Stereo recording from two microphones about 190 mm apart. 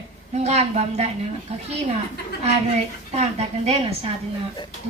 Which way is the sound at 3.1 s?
35° right (ahead or behind).